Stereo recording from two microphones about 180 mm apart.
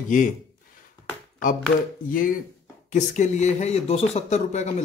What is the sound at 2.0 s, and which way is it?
A man's voice, 50° left (ahead or behind).